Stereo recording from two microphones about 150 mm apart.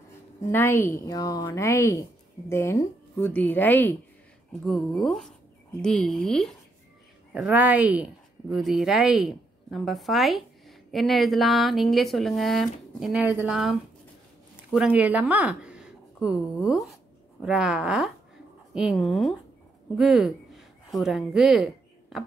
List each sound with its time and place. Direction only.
0.4 s a woman's voice: 15° left (ahead or behind)
4.5 s speech: centre (ahead or behind)
7.3 s speech: 10° right (ahead or behind)
13.2 s speech: 10° right (ahead or behind)
14.7 s speech: 5° right (ahead or behind)